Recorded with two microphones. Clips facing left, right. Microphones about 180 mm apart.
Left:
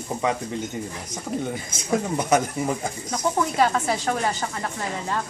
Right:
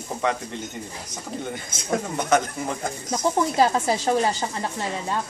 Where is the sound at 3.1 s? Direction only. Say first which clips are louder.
Right 2 dB; 30° right (ahead or behind).